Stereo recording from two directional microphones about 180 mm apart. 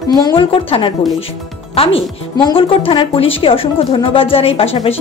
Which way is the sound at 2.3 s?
25° left (ahead or behind).